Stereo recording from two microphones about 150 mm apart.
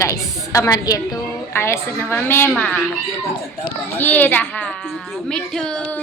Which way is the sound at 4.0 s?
10° left (ahead or behind).